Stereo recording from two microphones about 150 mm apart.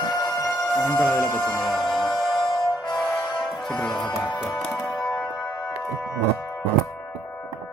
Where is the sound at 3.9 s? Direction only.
30° left (ahead or behind).